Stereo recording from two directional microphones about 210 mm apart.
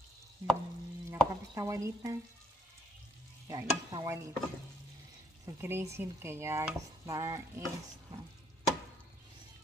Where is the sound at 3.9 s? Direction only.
20° right (ahead or behind).